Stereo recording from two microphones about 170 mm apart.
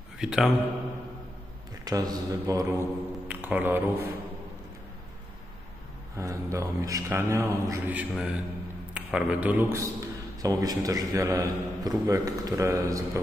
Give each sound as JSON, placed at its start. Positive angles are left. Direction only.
{"t": 0.2, "sound": "speech", "side_deg": -5}
{"t": 1.9, "sound": "speech", "side_deg": -20}
{"t": 6.1, "sound": "a man's voice", "side_deg": -20}